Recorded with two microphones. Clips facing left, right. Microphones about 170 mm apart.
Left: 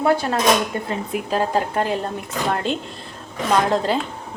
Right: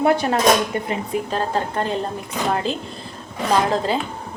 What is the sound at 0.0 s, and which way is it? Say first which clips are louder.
Speech: right 1 dB; 20° right (ahead or behind).